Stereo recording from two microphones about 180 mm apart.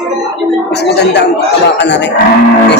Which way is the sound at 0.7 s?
70° left (ahead or behind).